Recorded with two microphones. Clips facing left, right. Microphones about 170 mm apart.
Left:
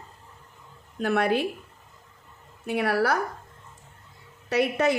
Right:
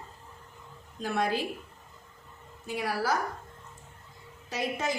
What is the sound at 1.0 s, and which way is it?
Speech, 65° left (ahead or behind).